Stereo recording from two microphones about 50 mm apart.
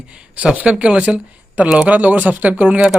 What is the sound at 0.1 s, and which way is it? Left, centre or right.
Speech, right.